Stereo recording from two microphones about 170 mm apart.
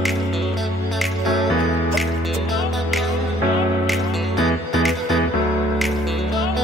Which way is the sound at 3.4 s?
20° right (ahead or behind).